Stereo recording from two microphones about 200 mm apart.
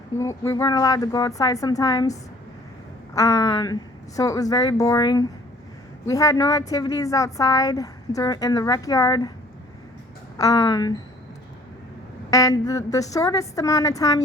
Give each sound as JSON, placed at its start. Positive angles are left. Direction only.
{"t": 0.2, "sound": "a woman's voice", "side_deg": 15}
{"t": 3.2, "sound": "a woman's voice", "side_deg": 15}
{"t": 10.3, "sound": "a woman's voice", "side_deg": 15}
{"t": 12.3, "sound": "a woman's voice", "side_deg": 15}